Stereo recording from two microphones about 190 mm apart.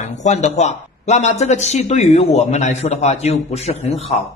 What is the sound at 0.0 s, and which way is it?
Speech, 40° left (ahead or behind).